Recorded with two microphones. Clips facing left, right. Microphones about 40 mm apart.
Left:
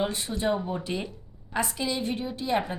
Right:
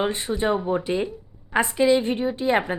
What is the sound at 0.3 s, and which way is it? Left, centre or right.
A woman's voice, right.